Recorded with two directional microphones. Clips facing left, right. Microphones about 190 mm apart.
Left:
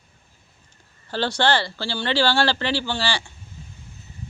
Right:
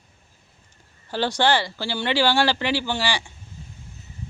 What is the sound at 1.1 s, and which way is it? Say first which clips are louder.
Speech: even; 15° right (ahead or behind).